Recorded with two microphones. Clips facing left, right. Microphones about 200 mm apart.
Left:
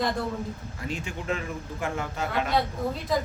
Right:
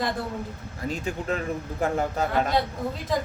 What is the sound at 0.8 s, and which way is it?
Speech, 40° right (ahead or behind).